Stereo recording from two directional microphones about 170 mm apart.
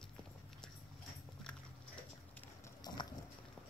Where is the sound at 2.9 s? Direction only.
25° left (ahead or behind).